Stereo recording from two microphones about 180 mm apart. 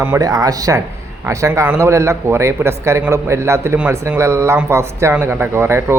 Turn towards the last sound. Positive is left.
turn(degrees=-15)  # may be behind; listen again after turning